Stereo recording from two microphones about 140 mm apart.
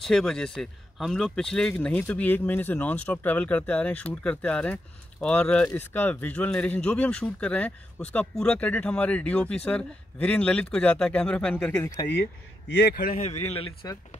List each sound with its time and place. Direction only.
0.0 s speech: 5° left (ahead or behind)
12.9 s speech: 90° left
13.2 s speech: 50° left (ahead or behind)